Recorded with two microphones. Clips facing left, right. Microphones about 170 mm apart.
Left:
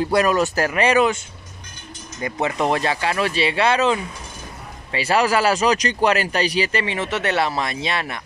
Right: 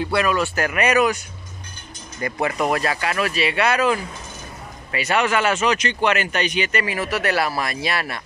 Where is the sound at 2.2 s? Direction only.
25° left (ahead or behind).